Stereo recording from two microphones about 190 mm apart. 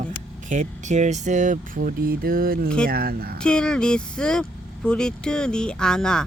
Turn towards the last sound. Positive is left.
turn(degrees=5)  # may be behind; listen again after turning